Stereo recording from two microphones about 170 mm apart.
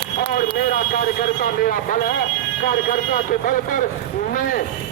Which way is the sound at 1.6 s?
50° left (ahead or behind).